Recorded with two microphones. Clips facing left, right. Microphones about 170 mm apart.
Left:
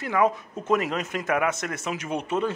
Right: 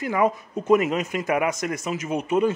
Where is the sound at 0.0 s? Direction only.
10° right (ahead or behind).